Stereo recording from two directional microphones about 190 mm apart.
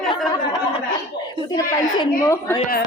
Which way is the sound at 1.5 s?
20° left (ahead or behind).